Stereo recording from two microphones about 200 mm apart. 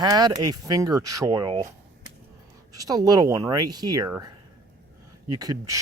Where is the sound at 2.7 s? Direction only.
20° right (ahead or behind).